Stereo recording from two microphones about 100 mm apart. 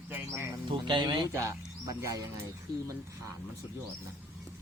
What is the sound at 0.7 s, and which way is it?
Speech, 50° right (ahead or behind).